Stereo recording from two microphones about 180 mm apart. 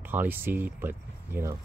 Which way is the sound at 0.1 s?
10° right (ahead or behind).